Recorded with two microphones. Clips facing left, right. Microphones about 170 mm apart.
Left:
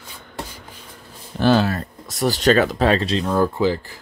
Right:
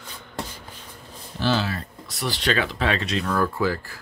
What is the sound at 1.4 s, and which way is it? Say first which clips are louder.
Speech: left 7 dB; 50° left (ahead or behind).